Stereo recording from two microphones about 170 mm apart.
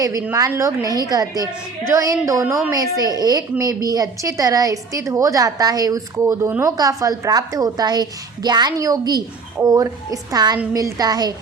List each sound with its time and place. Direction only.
0.0 s a woman's voice: 20° right (ahead or behind)